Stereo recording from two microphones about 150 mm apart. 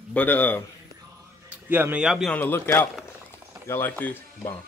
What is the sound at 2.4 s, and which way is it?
Speech, 15° left (ahead or behind).